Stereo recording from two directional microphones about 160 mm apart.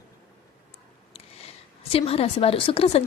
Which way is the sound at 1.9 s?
40° left (ahead or behind).